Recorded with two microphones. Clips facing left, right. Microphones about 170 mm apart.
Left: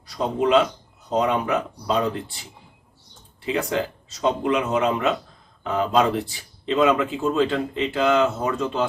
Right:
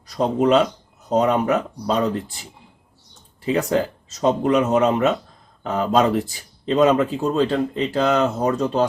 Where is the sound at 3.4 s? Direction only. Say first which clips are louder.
Right 4 dB; 40° right (ahead or behind).